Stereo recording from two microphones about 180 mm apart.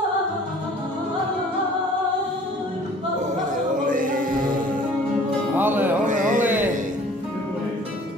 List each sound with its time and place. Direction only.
3.8 s music: 45° right (ahead or behind)
5.6 s music: 10° right (ahead or behind)
6.0 s a sound: 45° right (ahead or behind)
6.4 s music: 10° right (ahead or behind)